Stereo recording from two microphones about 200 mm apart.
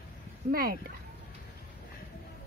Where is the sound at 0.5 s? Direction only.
45° right (ahead or behind).